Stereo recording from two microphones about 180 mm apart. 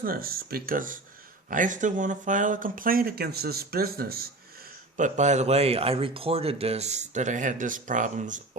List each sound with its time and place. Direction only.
0.0 s speech: 55° right (ahead or behind)
4.9 s speech: 45° right (ahead or behind)